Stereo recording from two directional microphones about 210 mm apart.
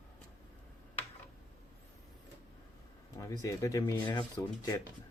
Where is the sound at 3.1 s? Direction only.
15° left (ahead or behind).